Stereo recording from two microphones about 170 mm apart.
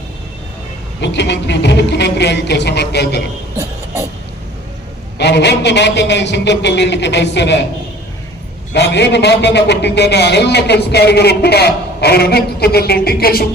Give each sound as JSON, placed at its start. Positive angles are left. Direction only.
{"t": 1.0, "sound": "a man's voice", "side_deg": 90}
{"t": 5.1, "sound": "a man's voice", "side_deg": 80}
{"t": 8.7, "sound": "a man's voice", "side_deg": 90}